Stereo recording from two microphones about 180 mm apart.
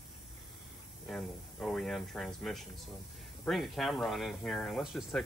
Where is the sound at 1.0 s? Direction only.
5° left (ahead or behind).